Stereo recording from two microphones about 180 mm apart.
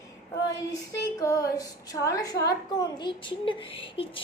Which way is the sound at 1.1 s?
20° left (ahead or behind).